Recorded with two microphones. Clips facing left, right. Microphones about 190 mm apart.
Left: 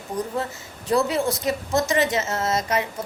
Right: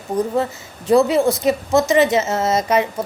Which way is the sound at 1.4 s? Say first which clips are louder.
Right 7 dB; 25° right (ahead or behind).